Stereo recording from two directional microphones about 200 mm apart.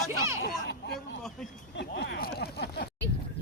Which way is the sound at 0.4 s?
55° left (ahead or behind).